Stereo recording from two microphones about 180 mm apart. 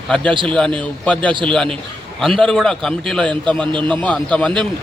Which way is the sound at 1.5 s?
5° left (ahead or behind).